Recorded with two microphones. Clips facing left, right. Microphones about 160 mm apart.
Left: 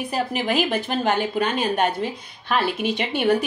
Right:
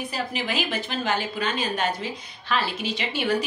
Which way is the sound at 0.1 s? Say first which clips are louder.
Left 9 dB; 50° left (ahead or behind).